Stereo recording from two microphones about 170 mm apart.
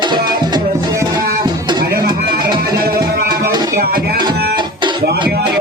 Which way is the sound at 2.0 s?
25° right (ahead or behind).